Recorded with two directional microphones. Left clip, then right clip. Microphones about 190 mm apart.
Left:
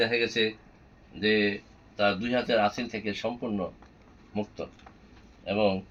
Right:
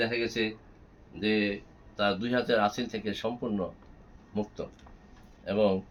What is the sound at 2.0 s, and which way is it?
Speech, 5° right (ahead or behind).